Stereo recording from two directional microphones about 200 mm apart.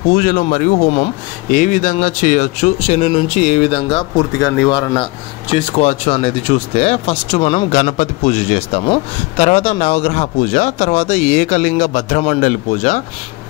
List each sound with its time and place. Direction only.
0.1 s speech: 45° left (ahead or behind)